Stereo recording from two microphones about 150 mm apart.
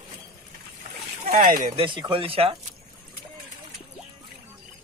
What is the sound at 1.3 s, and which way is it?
Speech, 60° right (ahead or behind).